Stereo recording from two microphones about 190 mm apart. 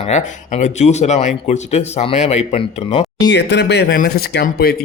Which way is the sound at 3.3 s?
65° left (ahead or behind).